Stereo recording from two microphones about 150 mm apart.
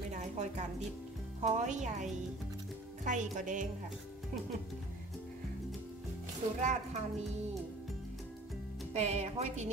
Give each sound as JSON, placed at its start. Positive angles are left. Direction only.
{"t": 0.1, "sound": "music", "side_deg": -55}
{"t": 1.4, "sound": "speech", "side_deg": -50}
{"t": 6.6, "sound": "speech", "side_deg": -50}
{"t": 8.9, "sound": "speech", "side_deg": -45}